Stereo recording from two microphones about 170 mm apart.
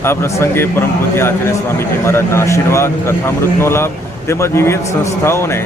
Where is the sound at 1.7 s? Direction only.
15° left (ahead or behind).